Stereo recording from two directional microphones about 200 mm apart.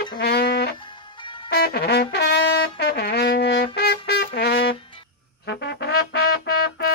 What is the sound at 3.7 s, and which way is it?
Music, 55° left (ahead or behind).